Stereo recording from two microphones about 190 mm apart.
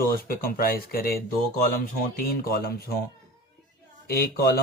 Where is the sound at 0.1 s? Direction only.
50° left (ahead or behind).